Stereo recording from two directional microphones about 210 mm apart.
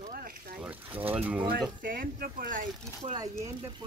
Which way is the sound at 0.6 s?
10° right (ahead or behind).